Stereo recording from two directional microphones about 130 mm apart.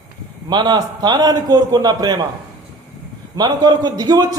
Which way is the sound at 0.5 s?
35° right (ahead or behind).